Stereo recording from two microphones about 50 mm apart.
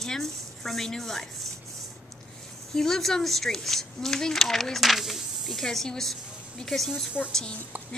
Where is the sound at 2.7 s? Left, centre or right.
Centre.